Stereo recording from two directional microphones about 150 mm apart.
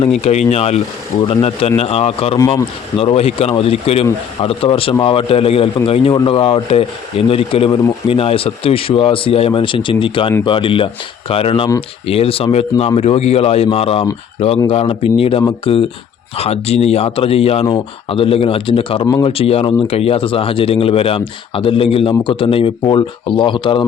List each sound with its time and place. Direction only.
0.2 s speech: 45° left (ahead or behind)